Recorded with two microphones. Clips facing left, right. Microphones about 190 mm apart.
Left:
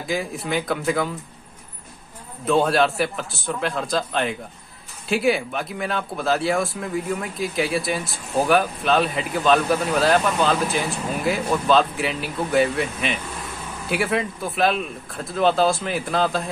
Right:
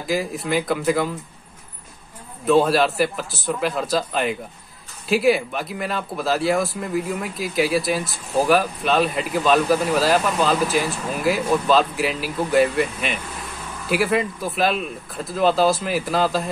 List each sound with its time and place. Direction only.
0.0 s speech: centre (ahead or behind)
2.4 s speech: centre (ahead or behind)